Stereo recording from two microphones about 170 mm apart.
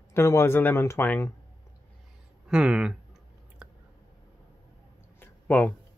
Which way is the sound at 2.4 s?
5° right (ahead or behind).